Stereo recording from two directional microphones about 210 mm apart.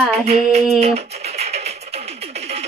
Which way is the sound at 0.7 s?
30° right (ahead or behind).